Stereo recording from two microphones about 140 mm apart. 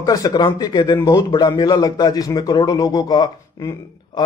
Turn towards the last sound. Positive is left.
turn(degrees=25)  # may be behind; listen again after turning